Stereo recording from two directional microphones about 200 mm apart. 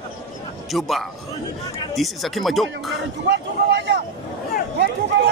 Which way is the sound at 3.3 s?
60° right (ahead or behind).